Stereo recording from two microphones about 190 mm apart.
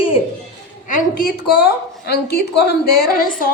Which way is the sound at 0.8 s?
50° left (ahead or behind).